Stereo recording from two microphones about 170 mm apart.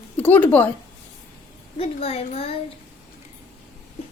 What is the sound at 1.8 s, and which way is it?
Speech, 35° left (ahead or behind).